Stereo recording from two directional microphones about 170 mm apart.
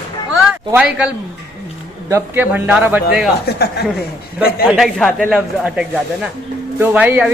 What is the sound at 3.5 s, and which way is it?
A man's voice, 75° left (ahead or behind).